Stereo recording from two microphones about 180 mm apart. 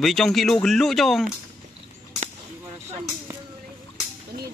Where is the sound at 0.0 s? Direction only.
Centre (ahead or behind).